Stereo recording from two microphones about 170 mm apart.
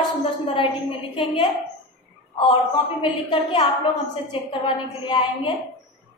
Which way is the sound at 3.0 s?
30° left (ahead or behind).